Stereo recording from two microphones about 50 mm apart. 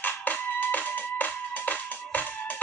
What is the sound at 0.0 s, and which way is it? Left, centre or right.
Music, left.